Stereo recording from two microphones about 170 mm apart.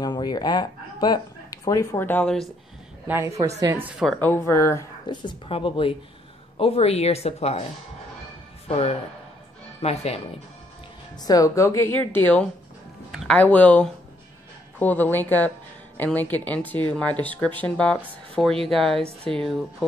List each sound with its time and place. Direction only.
0.0 s speech: 25° left (ahead or behind); by 2.4 s 5° left (ahead or behind)
3.1 s a woman's voice: 15° right (ahead or behind)
4.2 s speech: 15° left (ahead or behind); by 7.6 s 40° left (ahead or behind)
8.6 s speech: 35° left (ahead or behind)
11.2 s speech: 20° left (ahead or behind); by 19.5 s 5° left (ahead or behind)